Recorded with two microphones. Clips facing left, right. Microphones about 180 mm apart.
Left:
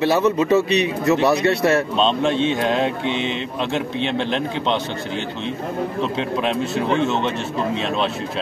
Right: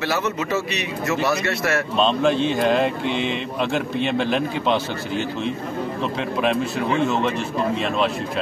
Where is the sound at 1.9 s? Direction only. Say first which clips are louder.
Even; centre (ahead or behind).